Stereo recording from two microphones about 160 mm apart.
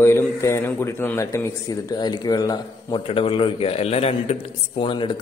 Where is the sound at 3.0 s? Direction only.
35° left (ahead or behind).